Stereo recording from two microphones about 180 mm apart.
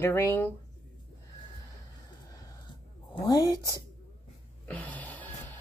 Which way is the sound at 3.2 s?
20° left (ahead or behind).